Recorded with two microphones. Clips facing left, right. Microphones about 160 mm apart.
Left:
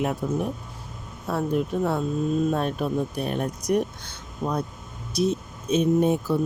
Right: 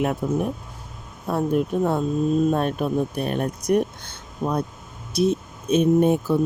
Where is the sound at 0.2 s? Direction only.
55° right (ahead or behind).